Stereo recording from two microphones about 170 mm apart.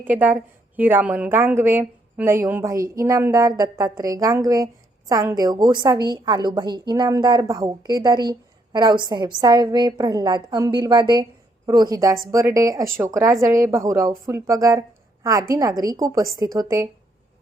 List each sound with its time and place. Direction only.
0.0 s a woman's voice: 10° right (ahead or behind)